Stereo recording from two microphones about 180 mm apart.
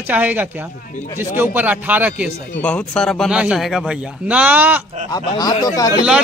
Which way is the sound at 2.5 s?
5° left (ahead or behind).